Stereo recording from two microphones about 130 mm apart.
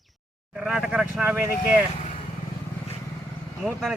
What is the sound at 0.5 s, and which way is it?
A man's voice, 5° right (ahead or behind).